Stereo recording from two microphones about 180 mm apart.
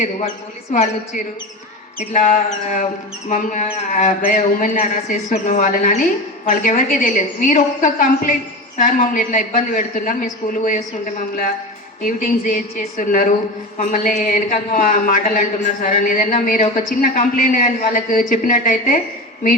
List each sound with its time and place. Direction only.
0.7 s a man's voice: 45° left (ahead or behind)
12.0 s a man's voice: 50° left (ahead or behind)